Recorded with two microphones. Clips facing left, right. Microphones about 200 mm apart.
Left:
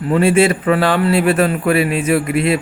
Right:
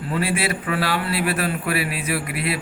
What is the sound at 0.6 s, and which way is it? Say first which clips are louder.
Speech: left 9 dB; 90° left.